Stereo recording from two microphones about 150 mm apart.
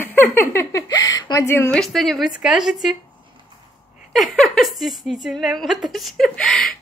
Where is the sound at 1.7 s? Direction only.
Centre (ahead or behind).